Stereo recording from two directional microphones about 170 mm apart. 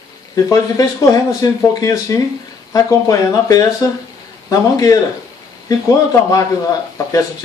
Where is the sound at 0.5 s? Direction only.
20° left (ahead or behind).